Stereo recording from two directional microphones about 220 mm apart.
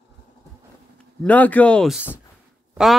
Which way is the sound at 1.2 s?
5° left (ahead or behind).